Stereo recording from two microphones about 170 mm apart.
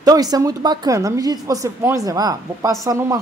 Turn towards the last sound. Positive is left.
turn(degrees=-20)  # may be behind; listen again after turning